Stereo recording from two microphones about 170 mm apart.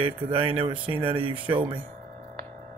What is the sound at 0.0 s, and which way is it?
Speech, 30° right (ahead or behind).